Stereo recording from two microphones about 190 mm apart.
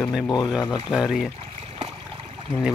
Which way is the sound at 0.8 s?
Centre (ahead or behind).